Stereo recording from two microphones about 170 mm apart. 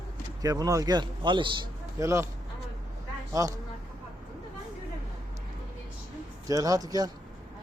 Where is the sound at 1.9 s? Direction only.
15° right (ahead or behind).